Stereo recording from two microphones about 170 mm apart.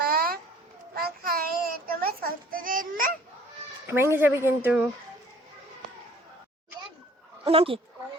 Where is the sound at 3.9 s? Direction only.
15° right (ahead or behind).